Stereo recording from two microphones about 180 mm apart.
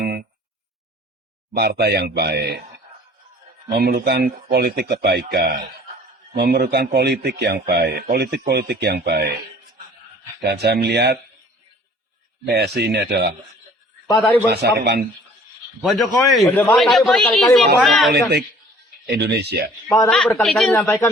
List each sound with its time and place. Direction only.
0.0 s a sound: 60° right (ahead or behind)
1.5 s speech: 65° right (ahead or behind)
3.7 s speech: 55° right (ahead or behind)
6.3 s speech: 65° right (ahead or behind)
10.4 s speech: 65° right (ahead or behind)
12.5 s speech: 65° right (ahead or behind)
14.1 s a man's voice: 5° left (ahead or behind)
14.5 s speech: 65° right (ahead or behind)
15.8 s a man's voice: centre (ahead or behind)
18.1 s speech: 65° right (ahead or behind)
20.1 s a man's voice: 5° left (ahead or behind)
20.7 s speech: 15° left (ahead or behind)